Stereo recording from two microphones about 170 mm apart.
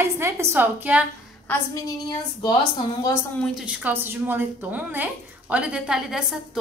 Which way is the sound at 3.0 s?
15° left (ahead or behind).